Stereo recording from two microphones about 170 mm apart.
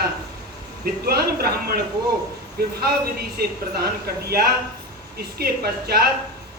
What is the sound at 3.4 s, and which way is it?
Speech, 65° right (ahead or behind).